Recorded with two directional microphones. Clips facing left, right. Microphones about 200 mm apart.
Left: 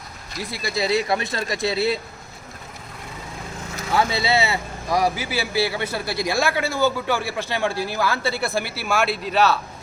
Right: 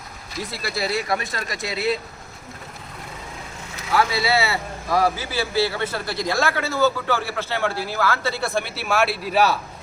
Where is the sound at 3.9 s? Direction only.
25° left (ahead or behind).